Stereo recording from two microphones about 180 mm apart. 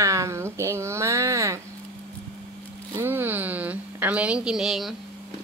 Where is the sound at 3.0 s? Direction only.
10° right (ahead or behind).